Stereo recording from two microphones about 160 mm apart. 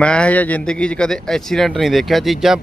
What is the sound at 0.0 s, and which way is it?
Speech, 5° left (ahead or behind).